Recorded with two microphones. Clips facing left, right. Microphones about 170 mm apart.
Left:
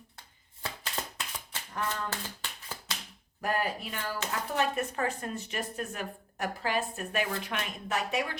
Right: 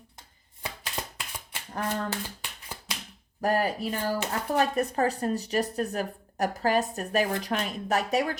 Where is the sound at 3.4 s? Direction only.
40° right (ahead or behind).